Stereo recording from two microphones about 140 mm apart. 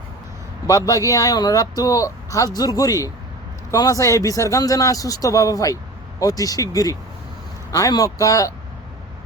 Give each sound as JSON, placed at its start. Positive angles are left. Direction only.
{"t": 0.7, "sound": "speech", "side_deg": 25}